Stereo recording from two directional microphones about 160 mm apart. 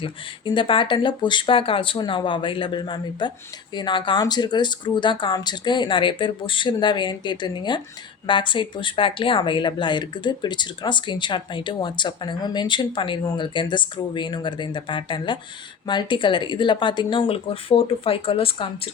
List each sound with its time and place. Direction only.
0.0 s speech: 30° left (ahead or behind)